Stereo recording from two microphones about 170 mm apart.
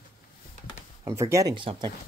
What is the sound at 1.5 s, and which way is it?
Speech, 30° right (ahead or behind).